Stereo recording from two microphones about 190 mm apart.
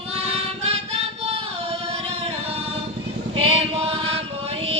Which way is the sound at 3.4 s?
30° right (ahead or behind).